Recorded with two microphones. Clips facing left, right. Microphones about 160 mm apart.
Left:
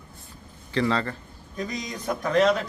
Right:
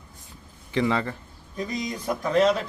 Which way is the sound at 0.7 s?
15° right (ahead or behind).